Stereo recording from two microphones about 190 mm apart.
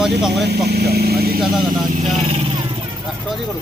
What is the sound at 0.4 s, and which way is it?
Speech, 60° right (ahead or behind).